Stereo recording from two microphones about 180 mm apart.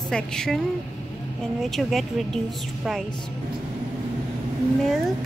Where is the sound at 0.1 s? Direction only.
5° left (ahead or behind).